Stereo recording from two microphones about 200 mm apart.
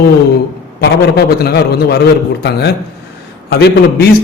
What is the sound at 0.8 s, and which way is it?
A man's voice, 50° left (ahead or behind).